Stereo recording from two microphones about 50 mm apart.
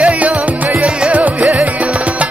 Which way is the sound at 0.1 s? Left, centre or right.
Right.